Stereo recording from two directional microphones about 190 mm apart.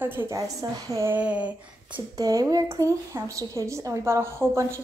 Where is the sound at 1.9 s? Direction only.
20° right (ahead or behind).